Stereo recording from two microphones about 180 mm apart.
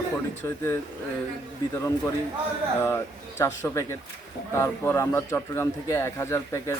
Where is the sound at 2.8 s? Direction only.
15° left (ahead or behind).